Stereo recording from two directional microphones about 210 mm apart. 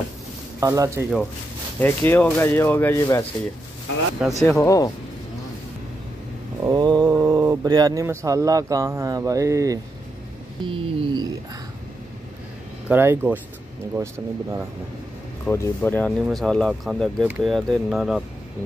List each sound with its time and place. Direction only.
0.6 s speech: 15° right (ahead or behind)
1.8 s speech: 10° left (ahead or behind)
4.2 s speech: 5° right (ahead or behind)
4.6 s speech: 15° left (ahead or behind)
6.6 s speech: 20° right (ahead or behind)
12.8 s speech: 10° right (ahead or behind)
15.4 s speech: 10° left (ahead or behind)